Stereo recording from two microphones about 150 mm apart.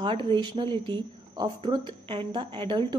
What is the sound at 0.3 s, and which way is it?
Speech, 35° right (ahead or behind).